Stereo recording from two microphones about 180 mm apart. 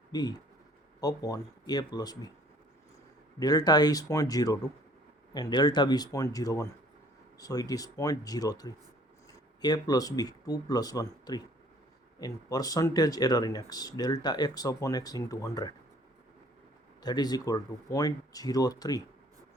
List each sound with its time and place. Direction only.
0.1 s speech: 20° left (ahead or behind)
3.3 s speech: 20° left (ahead or behind)
17.0 s speech: 20° left (ahead or behind)